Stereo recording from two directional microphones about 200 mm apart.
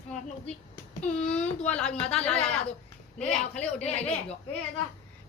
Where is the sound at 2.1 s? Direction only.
5° left (ahead or behind).